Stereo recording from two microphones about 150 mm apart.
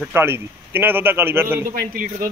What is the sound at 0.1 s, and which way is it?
A man's voice, 15° right (ahead or behind).